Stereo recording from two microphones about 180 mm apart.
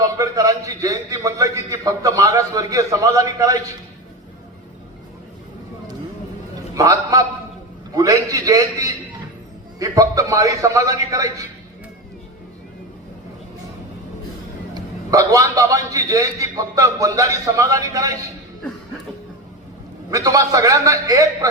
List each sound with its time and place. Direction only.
0.0 s a sound: 20° right (ahead or behind)
1.8 s a man's voice: 20° right (ahead or behind)
6.7 s a man's voice: 20° right (ahead or behind)
14.8 s a man's voice: 20° right (ahead or behind)
20.1 s a man's voice: 20° right (ahead or behind)